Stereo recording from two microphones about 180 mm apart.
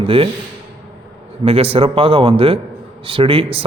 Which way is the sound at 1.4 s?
35° right (ahead or behind).